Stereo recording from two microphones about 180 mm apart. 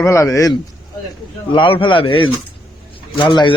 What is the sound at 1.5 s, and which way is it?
Speech, 30° left (ahead or behind).